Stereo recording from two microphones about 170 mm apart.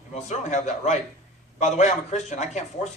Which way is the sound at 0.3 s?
45° left (ahead or behind).